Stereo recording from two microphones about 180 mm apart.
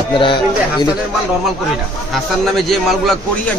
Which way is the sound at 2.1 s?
Centre (ahead or behind).